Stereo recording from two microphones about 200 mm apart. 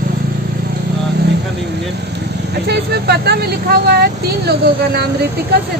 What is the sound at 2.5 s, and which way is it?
Speech, 55° right (ahead or behind).